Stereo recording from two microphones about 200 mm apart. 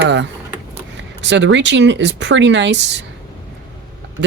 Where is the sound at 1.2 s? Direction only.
65° right (ahead or behind).